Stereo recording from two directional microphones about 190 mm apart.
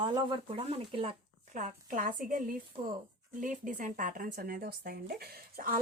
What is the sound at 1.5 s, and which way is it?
Speech, 45° right (ahead or behind).